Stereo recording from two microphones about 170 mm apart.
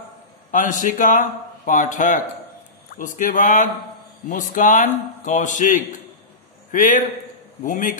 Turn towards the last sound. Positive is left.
turn(degrees=50)  # may be behind; listen again after turning